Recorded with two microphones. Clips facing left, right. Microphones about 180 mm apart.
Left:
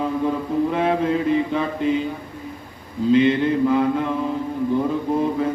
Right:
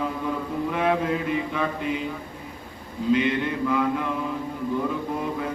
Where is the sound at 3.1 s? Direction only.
30° left (ahead or behind).